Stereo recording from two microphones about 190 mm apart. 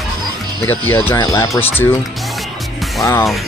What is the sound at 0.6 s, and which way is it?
Speech, 10° left (ahead or behind).